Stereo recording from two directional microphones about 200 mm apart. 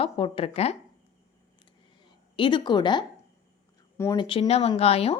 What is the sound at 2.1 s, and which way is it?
Speech, 25° left (ahead or behind).